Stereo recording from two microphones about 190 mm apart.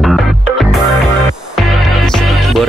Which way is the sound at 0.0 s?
Centre (ahead or behind).